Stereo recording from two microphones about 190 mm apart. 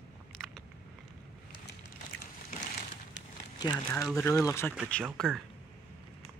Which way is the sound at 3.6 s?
20° left (ahead or behind).